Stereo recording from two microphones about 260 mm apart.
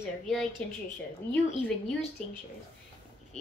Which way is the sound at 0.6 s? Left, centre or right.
Centre.